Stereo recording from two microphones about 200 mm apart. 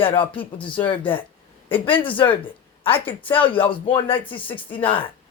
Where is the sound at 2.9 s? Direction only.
10° left (ahead or behind).